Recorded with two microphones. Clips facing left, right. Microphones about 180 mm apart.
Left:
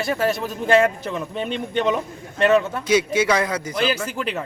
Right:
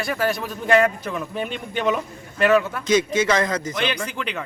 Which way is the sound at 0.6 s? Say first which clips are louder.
Left 1 dB; 30° left (ahead or behind).